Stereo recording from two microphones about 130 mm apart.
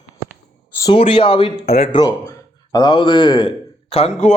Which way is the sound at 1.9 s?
35° left (ahead or behind).